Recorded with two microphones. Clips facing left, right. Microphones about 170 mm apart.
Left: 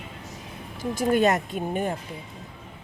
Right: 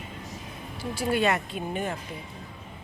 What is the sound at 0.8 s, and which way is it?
Speech, 45° left (ahead or behind).